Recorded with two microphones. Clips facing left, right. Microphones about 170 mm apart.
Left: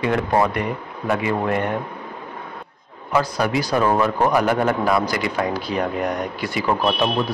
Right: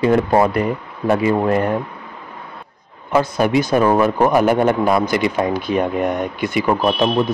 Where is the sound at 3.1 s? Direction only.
25° right (ahead or behind).